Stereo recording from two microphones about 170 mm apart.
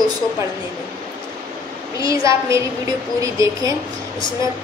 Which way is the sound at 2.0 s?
20° right (ahead or behind).